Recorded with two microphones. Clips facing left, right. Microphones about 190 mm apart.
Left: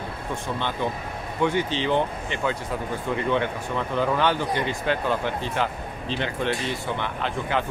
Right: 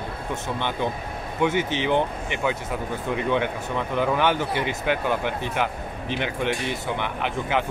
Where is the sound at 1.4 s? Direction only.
15° right (ahead or behind).